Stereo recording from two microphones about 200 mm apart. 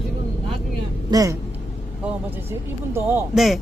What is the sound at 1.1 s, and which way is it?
Speech, 15° right (ahead or behind).